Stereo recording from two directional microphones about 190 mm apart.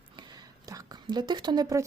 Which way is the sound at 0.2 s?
20° right (ahead or behind).